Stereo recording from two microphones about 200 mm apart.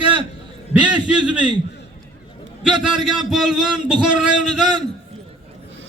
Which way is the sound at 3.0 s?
Centre (ahead or behind).